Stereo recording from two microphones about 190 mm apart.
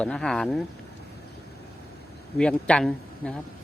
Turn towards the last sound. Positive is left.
turn(degrees=5)  # may be behind; listen again after turning